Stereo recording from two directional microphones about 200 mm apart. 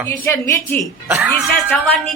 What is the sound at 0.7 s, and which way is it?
Speech, 10° right (ahead or behind).